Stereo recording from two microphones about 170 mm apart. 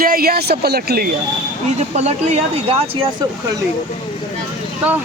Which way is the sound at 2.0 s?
35° right (ahead or behind).